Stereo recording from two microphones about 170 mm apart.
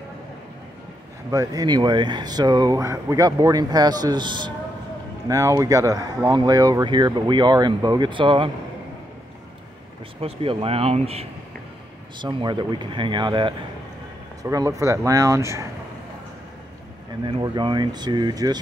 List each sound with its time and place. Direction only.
1.3 s speech: 20° right (ahead or behind)
10.2 s speech: 35° right (ahead or behind); by 15.7 s 15° right (ahead or behind)
17.4 s speech: 25° right (ahead or behind)